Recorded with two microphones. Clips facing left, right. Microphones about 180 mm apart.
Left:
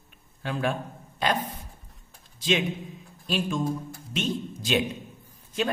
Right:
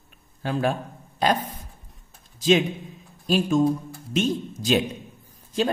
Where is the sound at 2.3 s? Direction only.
40° right (ahead or behind).